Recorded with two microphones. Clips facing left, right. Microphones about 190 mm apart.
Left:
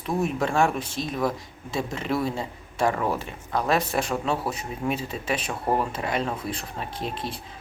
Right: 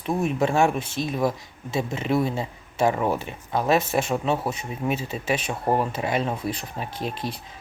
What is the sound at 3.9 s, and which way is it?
Speech, 10° right (ahead or behind).